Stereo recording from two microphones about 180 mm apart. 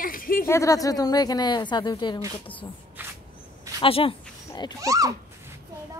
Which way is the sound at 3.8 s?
30° left (ahead or behind).